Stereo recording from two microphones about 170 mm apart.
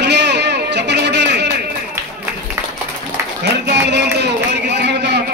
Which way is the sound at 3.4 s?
80° right.